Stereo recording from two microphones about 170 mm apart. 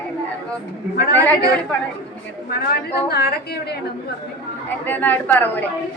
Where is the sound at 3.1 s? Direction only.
70° left (ahead or behind).